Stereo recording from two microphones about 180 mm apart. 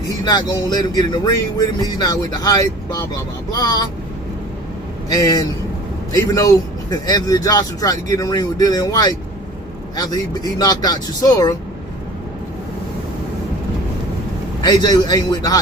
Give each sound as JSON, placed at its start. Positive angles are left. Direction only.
{"t": 0.3, "sound": "speech", "side_deg": 20}
{"t": 5.1, "sound": "speech", "side_deg": 20}
{"t": 14.6, "sound": "speech", "side_deg": 20}